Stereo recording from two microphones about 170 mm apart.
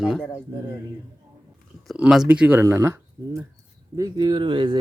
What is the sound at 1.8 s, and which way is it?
Speech, centre (ahead or behind).